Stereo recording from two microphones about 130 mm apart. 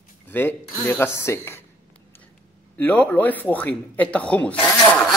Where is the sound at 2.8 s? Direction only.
15° left (ahead or behind).